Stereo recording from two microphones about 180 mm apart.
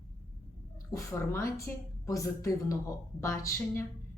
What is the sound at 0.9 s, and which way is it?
A woman's voice, 15° left (ahead or behind).